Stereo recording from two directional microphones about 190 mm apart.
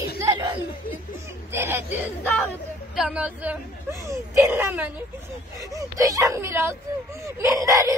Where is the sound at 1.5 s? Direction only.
15° right (ahead or behind).